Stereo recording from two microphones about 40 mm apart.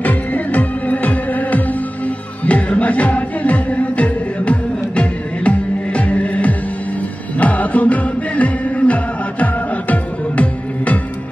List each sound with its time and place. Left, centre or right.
0.0 s music: left